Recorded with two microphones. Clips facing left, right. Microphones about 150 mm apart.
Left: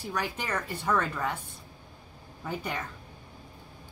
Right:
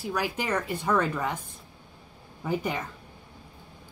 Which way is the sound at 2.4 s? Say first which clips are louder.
Right 5 dB; 15° right (ahead or behind).